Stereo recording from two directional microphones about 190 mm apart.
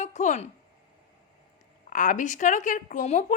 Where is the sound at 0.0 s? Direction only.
40° left (ahead or behind).